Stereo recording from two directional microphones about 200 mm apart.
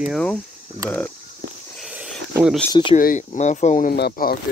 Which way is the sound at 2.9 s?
40° left (ahead or behind).